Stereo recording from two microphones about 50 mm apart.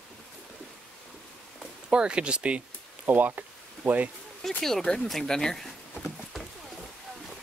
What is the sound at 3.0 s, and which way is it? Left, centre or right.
Speech, right.